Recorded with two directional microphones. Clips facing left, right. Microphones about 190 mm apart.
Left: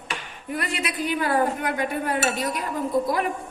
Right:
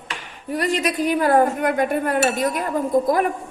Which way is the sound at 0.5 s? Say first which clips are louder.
Right 7 dB; 40° right (ahead or behind).